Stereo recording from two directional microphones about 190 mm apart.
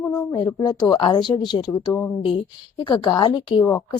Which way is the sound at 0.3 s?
20° left (ahead or behind).